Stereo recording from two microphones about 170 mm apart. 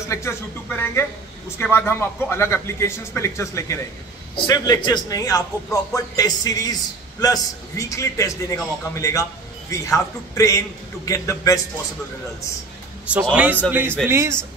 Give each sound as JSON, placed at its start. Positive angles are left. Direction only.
{"t": 0.1, "sound": "speech", "side_deg": 15}
{"t": 13.3, "sound": "a man's voice", "side_deg": -10}